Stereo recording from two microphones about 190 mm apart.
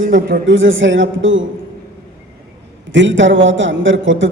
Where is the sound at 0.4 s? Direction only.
85° right.